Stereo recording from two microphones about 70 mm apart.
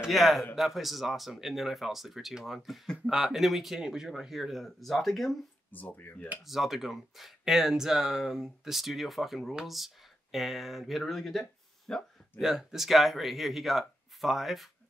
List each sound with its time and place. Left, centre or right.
0.0 s speech: centre
5.7 s speech: left
6.4 s speech: centre
12.4 s speech: centre